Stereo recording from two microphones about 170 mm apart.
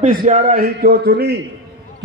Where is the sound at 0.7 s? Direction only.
70° right (ahead or behind).